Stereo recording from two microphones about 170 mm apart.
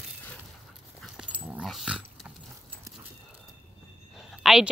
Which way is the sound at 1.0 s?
5° right (ahead or behind).